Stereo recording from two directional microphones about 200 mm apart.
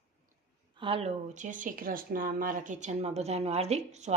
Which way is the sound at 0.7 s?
25° right (ahead or behind).